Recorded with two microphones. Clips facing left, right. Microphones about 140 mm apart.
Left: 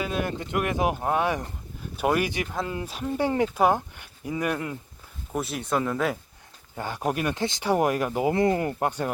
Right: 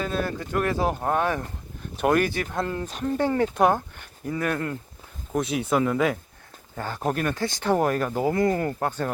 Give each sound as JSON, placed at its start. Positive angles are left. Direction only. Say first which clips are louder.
{"t": 0.0, "sound": "speech", "louder": "right 1 dB", "side_deg": 15}
{"t": 6.7, "sound": "speech", "louder": "right 1 dB", "side_deg": 15}
{"t": 8.3, "sound": "speech", "louder": "even", "side_deg": 20}